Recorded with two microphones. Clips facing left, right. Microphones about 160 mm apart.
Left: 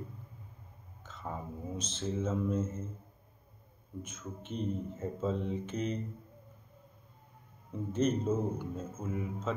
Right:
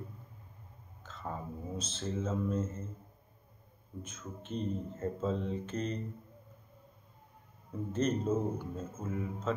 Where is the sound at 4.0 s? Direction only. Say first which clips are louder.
Left 1 dB; 15° left (ahead or behind).